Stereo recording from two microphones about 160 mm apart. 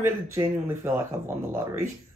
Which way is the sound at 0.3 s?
15° right (ahead or behind).